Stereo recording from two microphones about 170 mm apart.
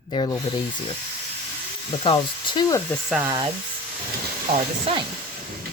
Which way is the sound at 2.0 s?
30° left (ahead or behind).